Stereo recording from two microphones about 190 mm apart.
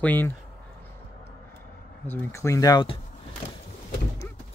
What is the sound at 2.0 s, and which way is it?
Speech, 10° left (ahead or behind).